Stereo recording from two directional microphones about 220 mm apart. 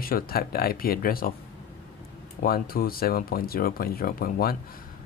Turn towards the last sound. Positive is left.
turn(degrees=45)  # may be behind; listen again after turning